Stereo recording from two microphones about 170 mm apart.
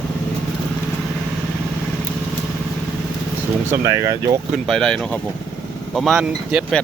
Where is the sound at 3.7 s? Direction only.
15° right (ahead or behind).